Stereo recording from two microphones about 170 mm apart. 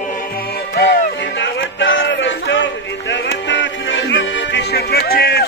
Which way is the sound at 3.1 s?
90° left.